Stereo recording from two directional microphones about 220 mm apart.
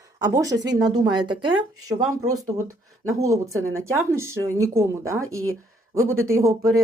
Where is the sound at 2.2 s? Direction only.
75° right (ahead or behind).